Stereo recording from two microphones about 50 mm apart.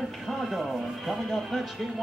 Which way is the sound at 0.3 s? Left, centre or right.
Centre.